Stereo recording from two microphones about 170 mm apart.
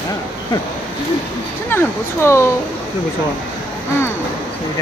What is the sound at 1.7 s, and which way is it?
Speech, 15° left (ahead or behind).